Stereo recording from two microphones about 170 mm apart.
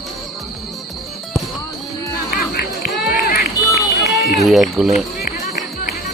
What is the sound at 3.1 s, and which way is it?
Run, 60° left (ahead or behind).